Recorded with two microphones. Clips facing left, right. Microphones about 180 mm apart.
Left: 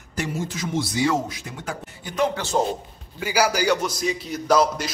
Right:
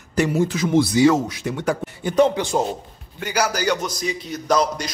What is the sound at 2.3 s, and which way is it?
Speech, 15° right (ahead or behind).